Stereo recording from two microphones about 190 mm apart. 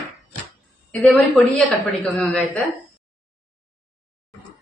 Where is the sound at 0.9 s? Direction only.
5° left (ahead or behind).